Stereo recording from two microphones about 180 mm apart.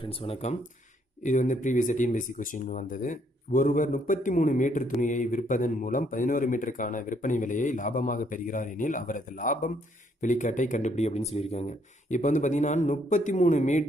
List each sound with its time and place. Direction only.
0.0 s a man's voice: 35° left (ahead or behind)